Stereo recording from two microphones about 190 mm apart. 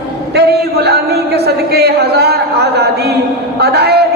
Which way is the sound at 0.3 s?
60° right (ahead or behind).